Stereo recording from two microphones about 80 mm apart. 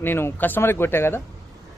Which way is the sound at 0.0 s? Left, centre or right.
Left.